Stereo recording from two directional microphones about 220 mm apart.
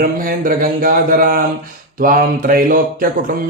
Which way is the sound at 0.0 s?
40° right (ahead or behind).